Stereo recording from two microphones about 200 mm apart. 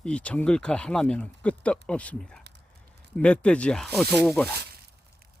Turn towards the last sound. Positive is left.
turn(degrees=5)  # may be behind; listen again after turning